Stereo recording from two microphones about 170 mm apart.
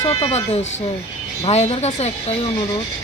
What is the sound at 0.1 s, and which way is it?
Speech, 40° left (ahead or behind).